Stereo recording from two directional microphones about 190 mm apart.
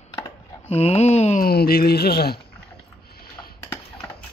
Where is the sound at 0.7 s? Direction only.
35° left (ahead or behind).